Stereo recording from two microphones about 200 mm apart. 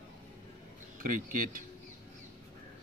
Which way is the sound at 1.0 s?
45° right (ahead or behind).